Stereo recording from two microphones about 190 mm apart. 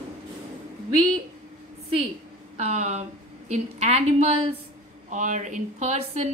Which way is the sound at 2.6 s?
35° right (ahead or behind).